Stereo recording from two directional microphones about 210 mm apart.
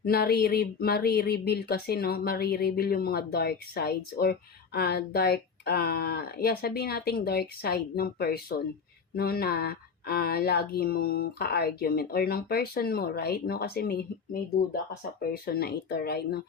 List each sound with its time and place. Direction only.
0.0 s speech: 45° left (ahead or behind)
15.2 s speech: 45° left (ahead or behind)